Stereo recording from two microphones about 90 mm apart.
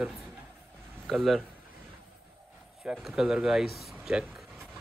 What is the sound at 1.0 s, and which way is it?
Speech, centre (ahead or behind).